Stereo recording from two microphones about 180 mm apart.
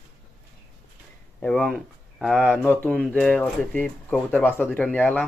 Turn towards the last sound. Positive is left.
turn(degrees=10)  # may be behind; listen again after turning